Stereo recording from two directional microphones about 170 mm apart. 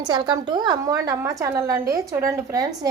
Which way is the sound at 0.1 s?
25° right (ahead or behind).